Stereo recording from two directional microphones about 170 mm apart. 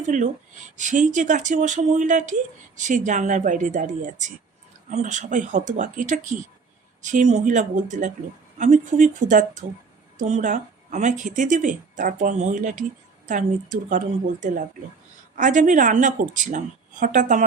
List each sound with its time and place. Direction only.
0.1 s speech: 45° right (ahead or behind)
15.4 s speech: 50° right (ahead or behind)